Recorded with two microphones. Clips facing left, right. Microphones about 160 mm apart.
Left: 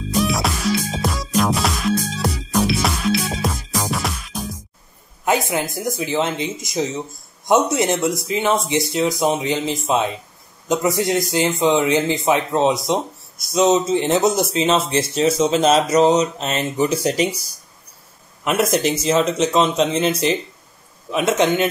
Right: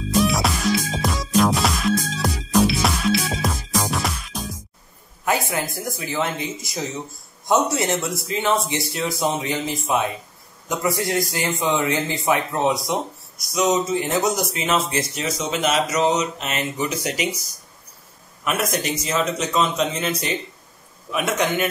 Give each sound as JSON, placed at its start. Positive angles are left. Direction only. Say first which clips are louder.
{"t": 0.2, "sound": "music", "louder": "left 1 dB", "side_deg": 0}
{"t": 5.2, "sound": "speech", "louder": "left 3 dB", "side_deg": 20}
{"t": 18.4, "sound": "speech", "louder": "left 6 dB", "side_deg": 25}